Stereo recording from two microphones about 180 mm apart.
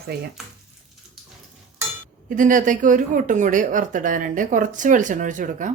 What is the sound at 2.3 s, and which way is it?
Speech, 45° right (ahead or behind).